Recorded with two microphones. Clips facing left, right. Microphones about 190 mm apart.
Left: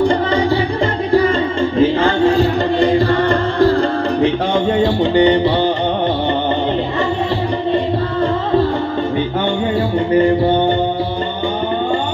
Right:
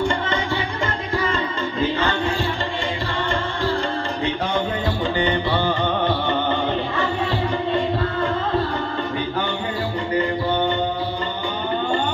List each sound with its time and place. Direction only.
0.0 s music: 35° left (ahead or behind)
1.8 s music: 30° left (ahead or behind)
3.1 s music: 65° left (ahead or behind)